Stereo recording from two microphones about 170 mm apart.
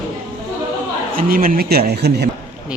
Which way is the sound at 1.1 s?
60° right (ahead or behind).